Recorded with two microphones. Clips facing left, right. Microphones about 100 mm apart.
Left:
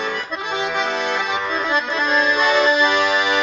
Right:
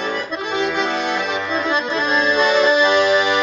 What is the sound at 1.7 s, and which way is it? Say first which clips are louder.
Accordion: even; 5° left (ahead or behind).